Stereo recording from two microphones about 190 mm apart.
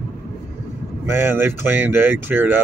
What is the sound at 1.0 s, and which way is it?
Speech, 10° right (ahead or behind).